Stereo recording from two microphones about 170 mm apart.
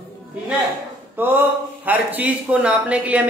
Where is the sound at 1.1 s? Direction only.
10° right (ahead or behind).